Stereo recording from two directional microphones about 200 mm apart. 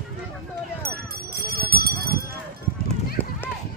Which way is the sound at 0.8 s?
50° right (ahead or behind).